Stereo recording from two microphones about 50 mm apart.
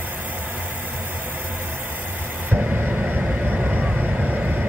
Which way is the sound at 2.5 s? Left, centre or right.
Right.